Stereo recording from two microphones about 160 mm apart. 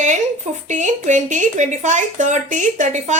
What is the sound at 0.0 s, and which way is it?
A woman's voice, 50° right (ahead or behind).